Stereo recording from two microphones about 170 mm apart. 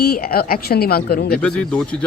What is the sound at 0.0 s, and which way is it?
Speech, 60° left (ahead or behind).